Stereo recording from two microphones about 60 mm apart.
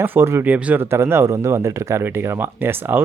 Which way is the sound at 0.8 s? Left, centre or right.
Right.